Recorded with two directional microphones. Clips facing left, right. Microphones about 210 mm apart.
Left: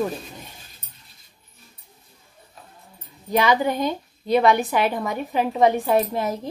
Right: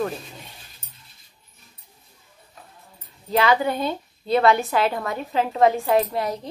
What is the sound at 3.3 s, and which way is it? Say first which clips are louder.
Speech: even; 15° left (ahead or behind).